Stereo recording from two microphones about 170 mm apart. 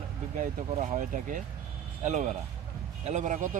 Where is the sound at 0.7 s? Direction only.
40° right (ahead or behind).